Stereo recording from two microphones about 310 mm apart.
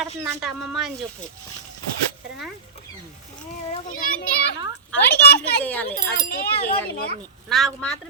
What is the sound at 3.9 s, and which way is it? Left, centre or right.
A child's voice, left.